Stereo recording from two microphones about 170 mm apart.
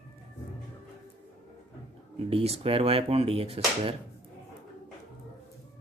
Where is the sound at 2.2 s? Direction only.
35° right (ahead or behind).